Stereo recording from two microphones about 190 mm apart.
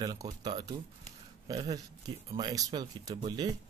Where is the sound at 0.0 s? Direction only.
20° right (ahead or behind).